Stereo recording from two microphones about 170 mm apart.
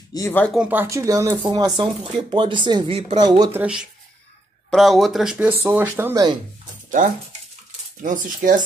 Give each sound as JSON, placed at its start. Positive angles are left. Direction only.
{"t": 0.1, "sound": "speech", "side_deg": 15}
{"t": 0.6, "sound": "speech", "side_deg": -10}
{"t": 3.5, "sound": "speech", "side_deg": -5}
{"t": 8.0, "sound": "speech", "side_deg": -50}